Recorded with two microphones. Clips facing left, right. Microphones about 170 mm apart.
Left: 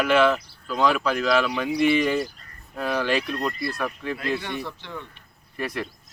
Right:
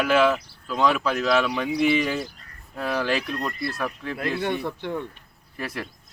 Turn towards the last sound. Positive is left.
turn(degrees=-5)  # may be behind; listen again after turning